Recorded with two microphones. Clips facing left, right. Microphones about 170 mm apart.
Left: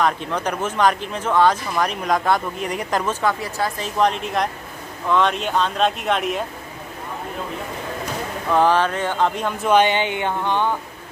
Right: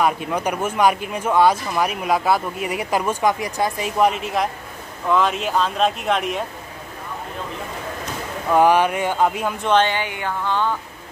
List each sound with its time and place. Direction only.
0.0 s speech: 10° right (ahead or behind)
8.5 s speech: 10° right (ahead or behind)
9.7 s speech: 15° left (ahead or behind)